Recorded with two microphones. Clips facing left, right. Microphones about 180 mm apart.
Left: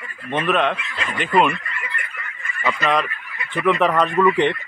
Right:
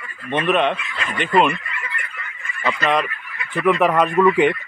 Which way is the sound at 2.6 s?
Centre (ahead or behind).